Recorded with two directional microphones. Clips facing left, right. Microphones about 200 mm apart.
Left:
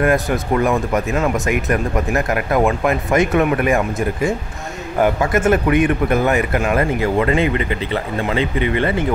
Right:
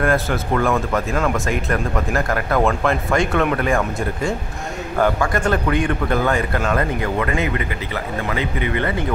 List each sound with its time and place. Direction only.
0.1 s a man's voice: 15° left (ahead or behind)